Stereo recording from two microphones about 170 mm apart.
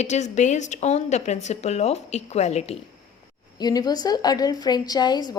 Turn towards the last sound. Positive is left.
turn(degrees=25)  # may be behind; listen again after turning